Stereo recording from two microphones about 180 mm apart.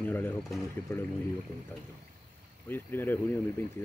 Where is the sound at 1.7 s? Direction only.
10° left (ahead or behind).